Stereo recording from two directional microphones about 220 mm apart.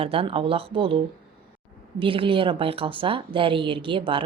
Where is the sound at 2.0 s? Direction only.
25° right (ahead or behind).